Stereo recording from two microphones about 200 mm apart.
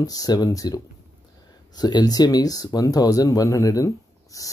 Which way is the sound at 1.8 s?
20° left (ahead or behind).